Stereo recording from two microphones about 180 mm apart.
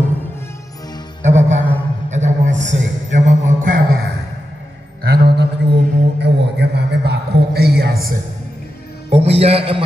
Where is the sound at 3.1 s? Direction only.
45° right (ahead or behind).